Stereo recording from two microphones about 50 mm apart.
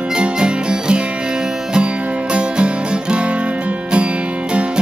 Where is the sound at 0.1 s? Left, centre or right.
Centre.